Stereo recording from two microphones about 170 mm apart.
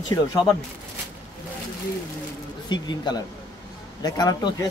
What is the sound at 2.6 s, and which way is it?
Speech, 25° left (ahead or behind).